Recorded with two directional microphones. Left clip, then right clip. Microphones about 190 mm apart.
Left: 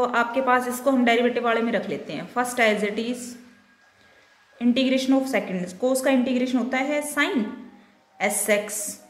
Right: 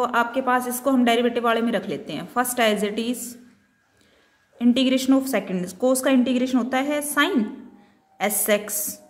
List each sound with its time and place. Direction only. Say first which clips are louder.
0.0 s speech: even; 25° right (ahead or behind)
4.6 s speech: right 1 dB; 30° right (ahead or behind)
8.5 s a woman's voice: right 1 dB; 30° right (ahead or behind)